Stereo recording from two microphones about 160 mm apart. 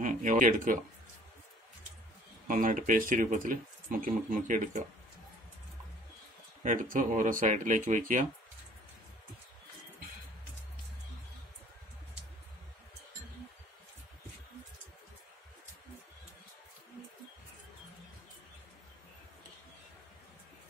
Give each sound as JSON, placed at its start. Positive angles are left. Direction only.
{"t": 0.0, "sound": "speech", "side_deg": -55}
{"t": 2.4, "sound": "speech", "side_deg": -55}
{"t": 6.6, "sound": "speech", "side_deg": -55}